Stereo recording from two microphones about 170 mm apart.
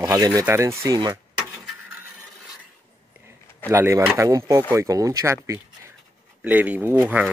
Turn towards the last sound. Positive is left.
turn(degrees=-10)  # may be behind; listen again after turning